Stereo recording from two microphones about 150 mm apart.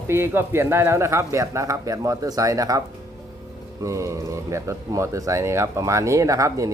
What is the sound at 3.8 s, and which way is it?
Speech, 20° right (ahead or behind).